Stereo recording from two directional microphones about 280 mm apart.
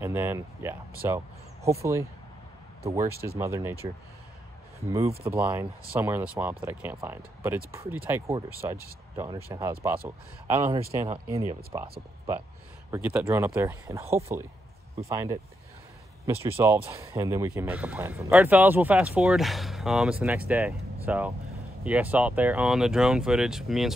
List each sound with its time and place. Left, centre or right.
0.0 s a man's voice: centre
3.1 s speech: right
3.3 s a man's voice: centre
4.8 s a man's voice: centre
12.9 s a man's voice: centre
16.4 s a man's voice: centre